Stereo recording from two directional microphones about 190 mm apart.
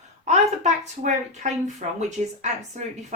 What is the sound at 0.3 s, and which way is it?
A woman's voice, 35° right (ahead or behind).